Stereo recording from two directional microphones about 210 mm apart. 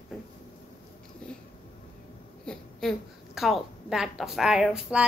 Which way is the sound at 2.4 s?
Centre (ahead or behind).